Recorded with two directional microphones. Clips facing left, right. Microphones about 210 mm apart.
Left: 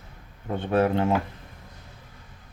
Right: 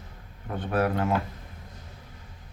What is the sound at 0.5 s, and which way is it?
Speech, 25° left (ahead or behind).